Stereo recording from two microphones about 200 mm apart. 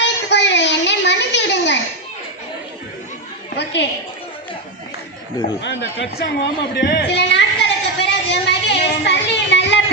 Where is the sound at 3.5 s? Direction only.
60° left (ahead or behind).